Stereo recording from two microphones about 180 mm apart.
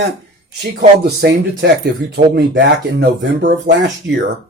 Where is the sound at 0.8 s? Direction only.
65° right (ahead or behind).